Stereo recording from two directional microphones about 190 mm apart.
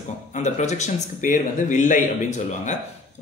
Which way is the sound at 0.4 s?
35° left (ahead or behind).